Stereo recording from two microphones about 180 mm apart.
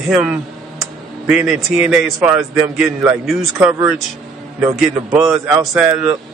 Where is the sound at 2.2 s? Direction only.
15° right (ahead or behind).